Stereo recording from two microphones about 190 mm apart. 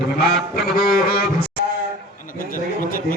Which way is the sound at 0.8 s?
50° left (ahead or behind).